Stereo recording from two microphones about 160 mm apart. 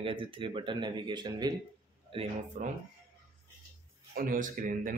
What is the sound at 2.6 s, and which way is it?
Speech, 55° right (ahead or behind).